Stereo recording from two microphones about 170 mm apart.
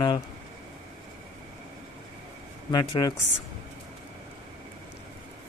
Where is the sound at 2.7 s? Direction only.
25° left (ahead or behind).